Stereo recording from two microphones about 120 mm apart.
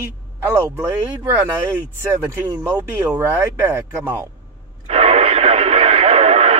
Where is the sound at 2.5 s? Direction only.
20° right (ahead or behind).